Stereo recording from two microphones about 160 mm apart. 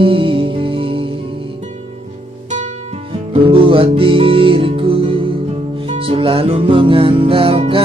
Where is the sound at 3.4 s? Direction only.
35° right (ahead or behind).